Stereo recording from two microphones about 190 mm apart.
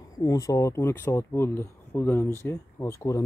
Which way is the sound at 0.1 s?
20° left (ahead or behind).